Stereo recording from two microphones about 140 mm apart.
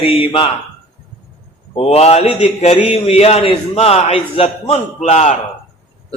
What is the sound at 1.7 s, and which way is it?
Mantra, 45° left (ahead or behind).